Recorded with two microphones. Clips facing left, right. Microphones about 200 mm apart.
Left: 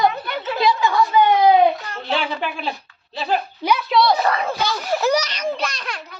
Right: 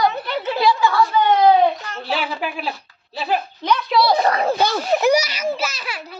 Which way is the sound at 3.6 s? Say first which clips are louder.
Left 1 dB; 10° left (ahead or behind).